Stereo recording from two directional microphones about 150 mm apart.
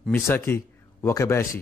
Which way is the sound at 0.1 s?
15° left (ahead or behind).